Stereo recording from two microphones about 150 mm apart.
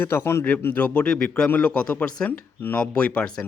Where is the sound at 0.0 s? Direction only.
15° left (ahead or behind).